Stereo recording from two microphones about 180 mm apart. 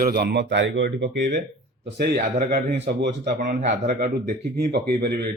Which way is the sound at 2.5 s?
65° right (ahead or behind).